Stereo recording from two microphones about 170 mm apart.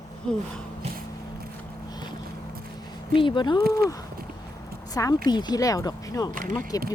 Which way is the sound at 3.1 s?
30° left (ahead or behind).